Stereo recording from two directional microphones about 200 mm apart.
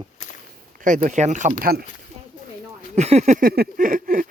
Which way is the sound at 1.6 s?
50° right (ahead or behind).